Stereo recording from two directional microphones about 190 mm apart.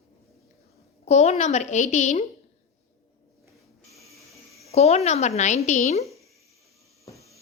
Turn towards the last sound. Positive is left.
turn(degrees=15)  # may be behind; listen again after turning